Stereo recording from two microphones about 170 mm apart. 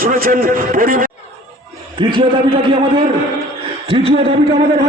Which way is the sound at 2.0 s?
30° right (ahead or behind).